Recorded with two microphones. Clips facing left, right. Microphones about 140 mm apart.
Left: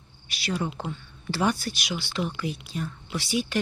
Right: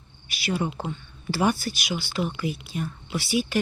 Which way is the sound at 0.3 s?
5° right (ahead or behind).